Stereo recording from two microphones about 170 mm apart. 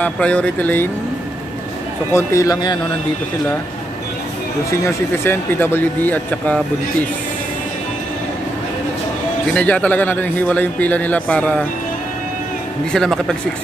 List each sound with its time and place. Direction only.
0.0 s a man's voice: 5° left (ahead or behind)
2.1 s a man's voice: 20° left (ahead or behind)
4.8 s a man's voice: 15° left (ahead or behind)
9.5 s a man's voice: 10° left (ahead or behind)
12.9 s speech: 5° left (ahead or behind)